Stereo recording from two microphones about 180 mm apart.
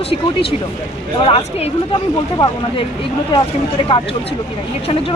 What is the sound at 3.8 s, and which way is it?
Speech, 30° left (ahead or behind).